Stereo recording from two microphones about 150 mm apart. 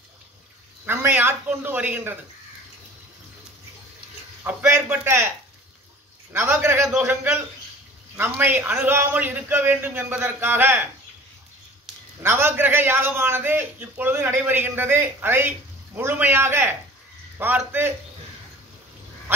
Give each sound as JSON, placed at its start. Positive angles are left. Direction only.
{"t": 0.8, "sound": "a man's voice", "side_deg": -15}
{"t": 4.4, "sound": "a man's voice", "side_deg": -15}
{"t": 6.3, "sound": "a man's voice", "side_deg": -15}
{"t": 12.2, "sound": "a man's voice", "side_deg": -15}